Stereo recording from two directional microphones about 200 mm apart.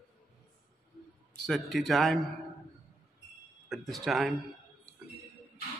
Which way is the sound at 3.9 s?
Centre (ahead or behind).